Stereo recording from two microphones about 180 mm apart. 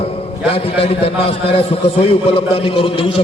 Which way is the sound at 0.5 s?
30° left (ahead or behind).